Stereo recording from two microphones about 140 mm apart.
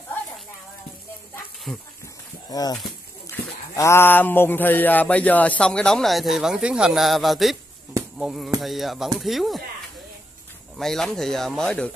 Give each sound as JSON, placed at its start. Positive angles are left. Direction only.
{"t": 1.7, "sound": "speech", "side_deg": 0}
{"t": 2.5, "sound": "speech", "side_deg": 25}
{"t": 10.8, "sound": "speech", "side_deg": 5}